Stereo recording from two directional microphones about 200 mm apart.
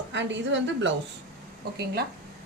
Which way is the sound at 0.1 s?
65° right (ahead or behind).